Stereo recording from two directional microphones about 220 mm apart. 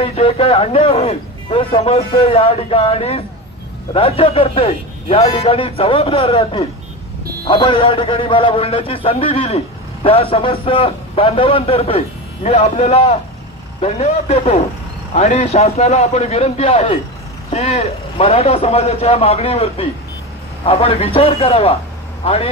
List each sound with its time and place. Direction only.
0.2 s a man's voice: 25° left (ahead or behind)